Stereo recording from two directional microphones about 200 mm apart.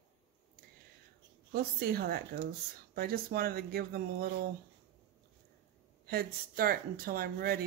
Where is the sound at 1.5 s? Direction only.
50° right (ahead or behind).